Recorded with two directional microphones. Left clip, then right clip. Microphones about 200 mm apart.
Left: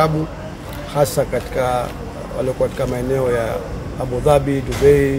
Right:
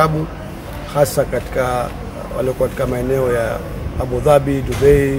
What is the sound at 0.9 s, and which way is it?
Speech, centre (ahead or behind).